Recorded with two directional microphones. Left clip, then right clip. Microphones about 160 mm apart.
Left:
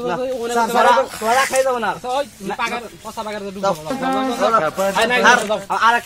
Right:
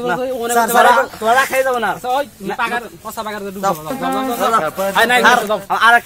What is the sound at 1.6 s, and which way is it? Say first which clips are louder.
Speech: right 2 dB; 30° right (ahead or behind).